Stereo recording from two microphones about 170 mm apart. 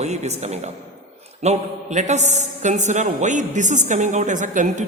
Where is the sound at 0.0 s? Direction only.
40° right (ahead or behind).